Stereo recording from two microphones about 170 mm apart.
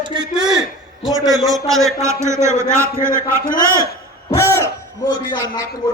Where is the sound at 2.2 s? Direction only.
15° right (ahead or behind).